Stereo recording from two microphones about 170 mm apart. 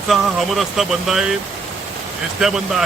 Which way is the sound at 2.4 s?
Centre (ahead or behind).